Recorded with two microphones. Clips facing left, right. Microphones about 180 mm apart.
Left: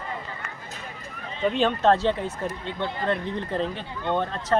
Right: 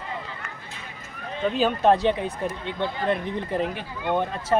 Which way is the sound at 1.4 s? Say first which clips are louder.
Even; centre (ahead or behind).